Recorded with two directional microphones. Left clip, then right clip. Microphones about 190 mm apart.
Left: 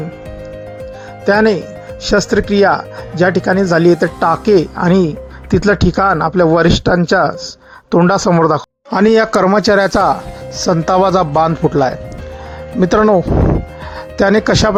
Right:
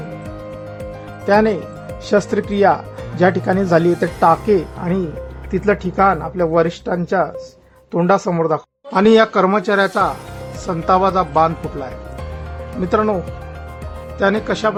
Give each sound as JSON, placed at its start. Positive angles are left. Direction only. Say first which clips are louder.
{"t": 1.2, "sound": "speech", "louder": "left 3 dB", "side_deg": 15}
{"t": 14.2, "sound": "speech", "louder": "left 6 dB", "side_deg": 40}